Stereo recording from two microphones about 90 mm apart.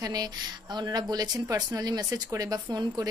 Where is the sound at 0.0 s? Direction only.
45° right (ahead or behind).